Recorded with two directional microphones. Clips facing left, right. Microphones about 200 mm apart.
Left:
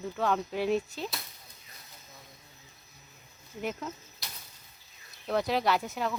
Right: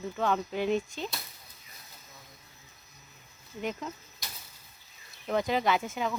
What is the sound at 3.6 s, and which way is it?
Speech, 5° left (ahead or behind).